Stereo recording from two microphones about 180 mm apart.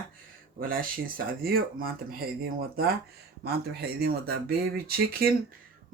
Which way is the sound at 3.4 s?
60° right (ahead or behind).